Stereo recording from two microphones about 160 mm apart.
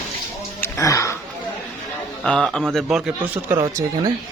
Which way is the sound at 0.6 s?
20° left (ahead or behind).